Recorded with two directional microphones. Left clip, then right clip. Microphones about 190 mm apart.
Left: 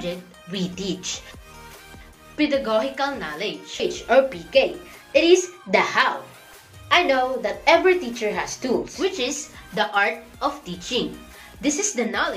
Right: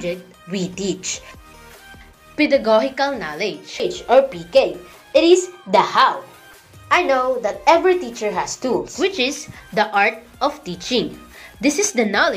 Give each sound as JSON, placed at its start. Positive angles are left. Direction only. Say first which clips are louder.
{"t": 0.0, "sound": "speech", "louder": "right 4 dB", "side_deg": -20}
{"t": 2.3, "sound": "speech", "louder": "right 6 dB", "side_deg": -30}
{"t": 3.9, "sound": "a woman's voice", "louder": "right 4 dB", "side_deg": -15}
{"t": 9.0, "sound": "speech", "louder": "right 4 dB", "side_deg": -30}